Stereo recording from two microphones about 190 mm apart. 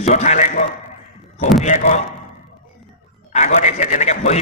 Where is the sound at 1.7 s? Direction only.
40° left (ahead or behind).